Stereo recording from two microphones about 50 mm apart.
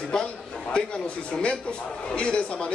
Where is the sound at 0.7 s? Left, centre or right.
Centre.